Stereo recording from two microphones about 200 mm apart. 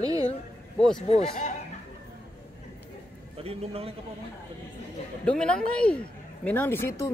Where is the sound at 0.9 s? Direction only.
30° left (ahead or behind).